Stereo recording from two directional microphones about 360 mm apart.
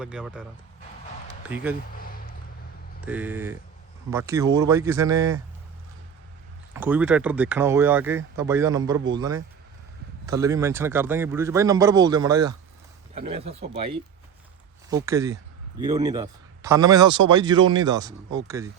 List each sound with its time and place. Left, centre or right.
0.0 s speech: centre
1.5 s speech: centre
3.1 s a man's voice: centre
6.7 s a man's voice: centre